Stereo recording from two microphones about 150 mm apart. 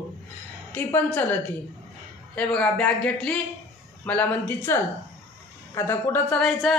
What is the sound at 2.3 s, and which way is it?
Speech, 10° left (ahead or behind).